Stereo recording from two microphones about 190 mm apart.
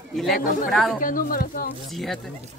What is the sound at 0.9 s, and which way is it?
Speech, 45° left (ahead or behind).